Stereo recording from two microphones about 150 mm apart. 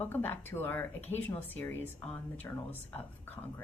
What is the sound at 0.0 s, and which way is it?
A woman's voice, 15° left (ahead or behind).